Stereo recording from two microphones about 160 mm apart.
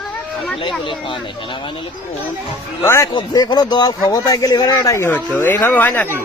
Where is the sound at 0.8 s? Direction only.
30° left (ahead or behind).